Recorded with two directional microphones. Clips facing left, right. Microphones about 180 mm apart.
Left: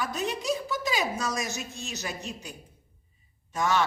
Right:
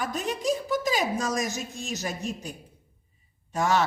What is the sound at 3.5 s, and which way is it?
Speech, 35° right (ahead or behind).